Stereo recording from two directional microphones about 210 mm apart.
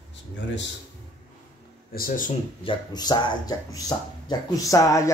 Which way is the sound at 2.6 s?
20° left (ahead or behind).